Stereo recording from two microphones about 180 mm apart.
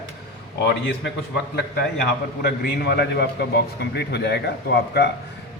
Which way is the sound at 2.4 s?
65° left (ahead or behind).